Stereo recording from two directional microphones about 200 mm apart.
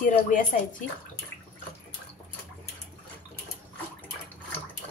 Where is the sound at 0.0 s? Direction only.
40° left (ahead or behind).